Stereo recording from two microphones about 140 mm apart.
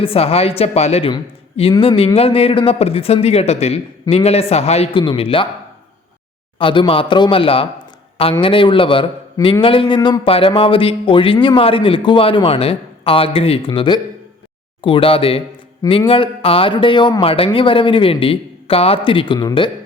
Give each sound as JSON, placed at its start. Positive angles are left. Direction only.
{"t": 0.0, "sound": "a man's voice", "side_deg": 45}
{"t": 6.6, "sound": "a man's voice", "side_deg": 40}